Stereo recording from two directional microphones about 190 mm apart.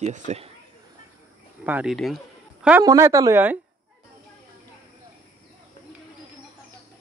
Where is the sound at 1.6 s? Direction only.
5° right (ahead or behind).